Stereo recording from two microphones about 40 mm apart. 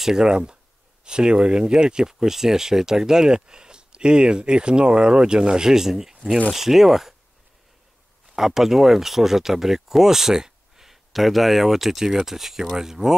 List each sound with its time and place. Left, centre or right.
0.0 s speech: centre
0.3 s speech: right; by 7.2 s centre
8.4 s speech: centre